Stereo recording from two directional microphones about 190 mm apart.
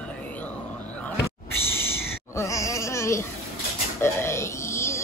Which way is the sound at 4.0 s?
15° left (ahead or behind).